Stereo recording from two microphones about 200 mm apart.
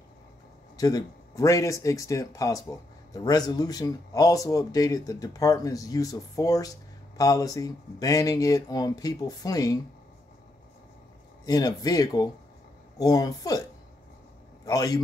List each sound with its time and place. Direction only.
0.7 s speech: 20° left (ahead or behind)
11.4 s a man's voice: 20° left (ahead or behind)